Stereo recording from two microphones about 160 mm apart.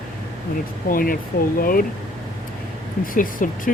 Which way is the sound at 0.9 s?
65° left (ahead or behind).